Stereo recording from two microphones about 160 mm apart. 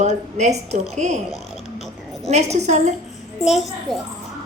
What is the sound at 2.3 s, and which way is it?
Speech, 45° right (ahead or behind).